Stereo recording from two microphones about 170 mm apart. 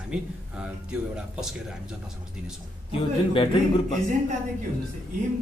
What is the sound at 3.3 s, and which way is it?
Speech, 30° left (ahead or behind).